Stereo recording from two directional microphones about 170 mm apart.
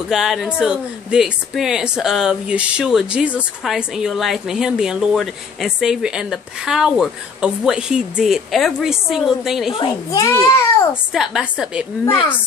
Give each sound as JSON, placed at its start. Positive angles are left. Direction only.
{"t": 0.1, "sound": "speech", "side_deg": 0}
{"t": 9.8, "sound": "a child's voice", "side_deg": 20}
{"t": 11.1, "sound": "speech", "side_deg": -5}